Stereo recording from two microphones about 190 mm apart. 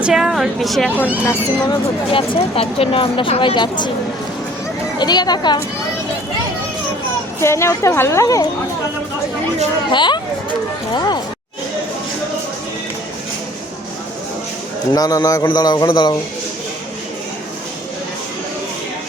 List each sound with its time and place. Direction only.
0.0 s speech: 5° right (ahead or behind)
1.2 s speech: 15° left (ahead or behind)
4.9 s speech: 20° left (ahead or behind)
7.4 s a woman's voice: 15° left (ahead or behind)
9.9 s speech: 25° left (ahead or behind)
14.9 s speech: 20° left (ahead or behind)